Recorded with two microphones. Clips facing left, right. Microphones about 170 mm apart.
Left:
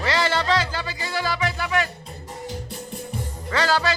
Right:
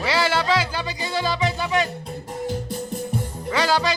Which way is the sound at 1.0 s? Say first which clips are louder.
Right 2 dB; 20° right (ahead or behind).